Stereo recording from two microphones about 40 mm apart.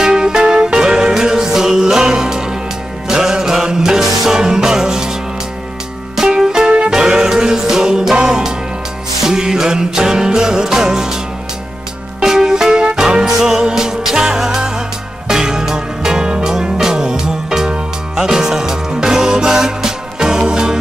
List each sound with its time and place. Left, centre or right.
0.0 s music: centre
6.2 s music: centre
6.9 s music: centre
12.2 s music: centre